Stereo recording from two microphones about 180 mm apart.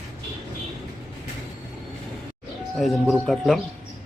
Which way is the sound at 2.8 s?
Centre (ahead or behind).